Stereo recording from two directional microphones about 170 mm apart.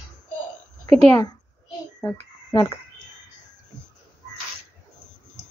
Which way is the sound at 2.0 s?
20° left (ahead or behind).